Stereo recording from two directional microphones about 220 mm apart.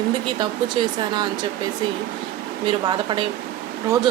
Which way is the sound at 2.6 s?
20° right (ahead or behind).